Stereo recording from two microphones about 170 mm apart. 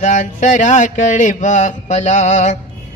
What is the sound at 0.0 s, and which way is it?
A man's voice, 45° left (ahead or behind).